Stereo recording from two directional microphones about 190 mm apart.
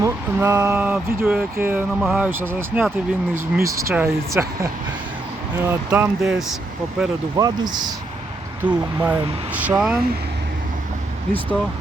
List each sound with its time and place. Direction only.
0.0 s speech: 10° right (ahead or behind)
7.3 s speech: 20° right (ahead or behind)
8.6 s speech: 5° right (ahead or behind)